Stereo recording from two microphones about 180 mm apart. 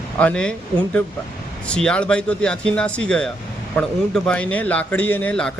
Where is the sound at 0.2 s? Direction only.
5° left (ahead or behind).